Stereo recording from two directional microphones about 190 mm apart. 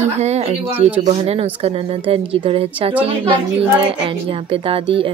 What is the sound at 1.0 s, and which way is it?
A child's voice, 35° right (ahead or behind).